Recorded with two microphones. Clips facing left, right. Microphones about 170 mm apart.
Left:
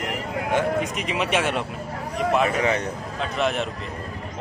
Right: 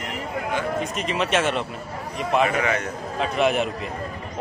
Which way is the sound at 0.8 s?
10° left (ahead or behind).